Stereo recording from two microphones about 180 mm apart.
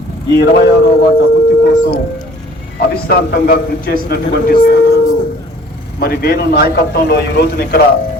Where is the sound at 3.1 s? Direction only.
60° left (ahead or behind).